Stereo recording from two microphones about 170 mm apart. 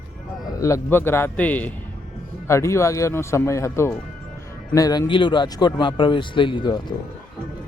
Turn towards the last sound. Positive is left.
turn(degrees=25)  # may be behind; listen again after turning